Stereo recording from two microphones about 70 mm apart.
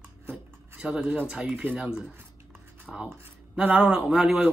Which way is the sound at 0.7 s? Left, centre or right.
Centre.